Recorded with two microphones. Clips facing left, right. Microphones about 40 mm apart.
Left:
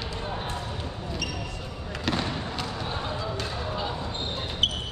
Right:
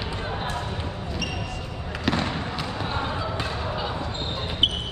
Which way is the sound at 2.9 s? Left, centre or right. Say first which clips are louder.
Right 3 dB; centre.